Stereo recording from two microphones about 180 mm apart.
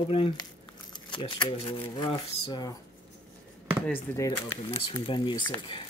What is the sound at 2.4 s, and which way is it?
Speech, 20° left (ahead or behind).